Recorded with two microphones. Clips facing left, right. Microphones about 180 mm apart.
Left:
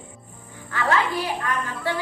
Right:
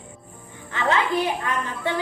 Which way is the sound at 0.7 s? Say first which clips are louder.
Right 1 dB; 20° right (ahead or behind).